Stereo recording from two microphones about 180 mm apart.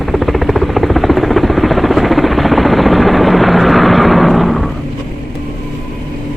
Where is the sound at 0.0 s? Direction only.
Centre (ahead or behind).